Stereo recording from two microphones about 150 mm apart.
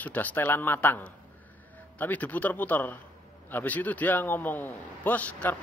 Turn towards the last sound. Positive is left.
turn(degrees=10)  # may be behind; listen again after turning